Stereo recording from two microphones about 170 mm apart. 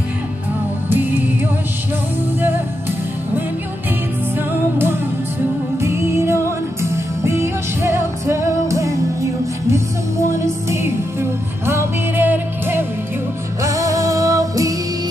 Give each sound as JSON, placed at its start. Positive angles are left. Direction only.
{"t": 0.8, "sound": "music", "side_deg": -10}
{"t": 4.4, "sound": "music", "side_deg": -10}